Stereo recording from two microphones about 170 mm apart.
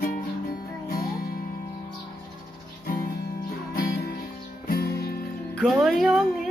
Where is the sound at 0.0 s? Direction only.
60° left (ahead or behind).